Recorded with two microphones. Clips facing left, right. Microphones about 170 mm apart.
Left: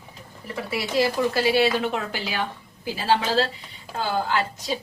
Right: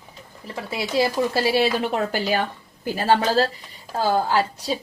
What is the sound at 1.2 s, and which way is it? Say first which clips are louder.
A woman's voice: even; 35° right (ahead or behind).